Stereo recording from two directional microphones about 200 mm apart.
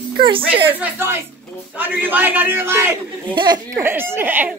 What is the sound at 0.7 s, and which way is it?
A child's voice, 10° right (ahead or behind).